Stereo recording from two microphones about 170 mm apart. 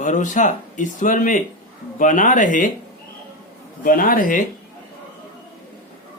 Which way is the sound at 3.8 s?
55° left (ahead or behind).